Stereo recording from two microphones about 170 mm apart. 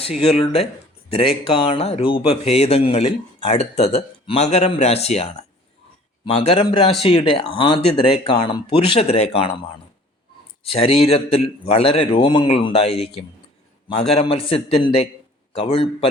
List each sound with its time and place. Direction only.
0.0 s a man's voice: 35° left (ahead or behind)
10.6 s a man's voice: 35° left (ahead or behind)
14.2 s a man's voice: 35° left (ahead or behind)